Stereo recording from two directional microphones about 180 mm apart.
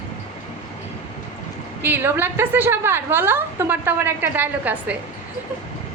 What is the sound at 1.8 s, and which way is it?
A woman's voice, 10° right (ahead or behind).